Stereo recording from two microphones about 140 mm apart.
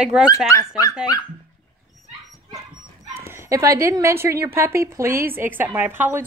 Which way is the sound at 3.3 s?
20° right (ahead or behind).